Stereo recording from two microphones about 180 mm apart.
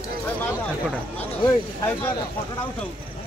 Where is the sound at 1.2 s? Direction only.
15° left (ahead or behind).